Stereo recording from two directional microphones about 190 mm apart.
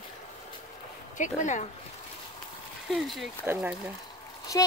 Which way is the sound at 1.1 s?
40° left (ahead or behind).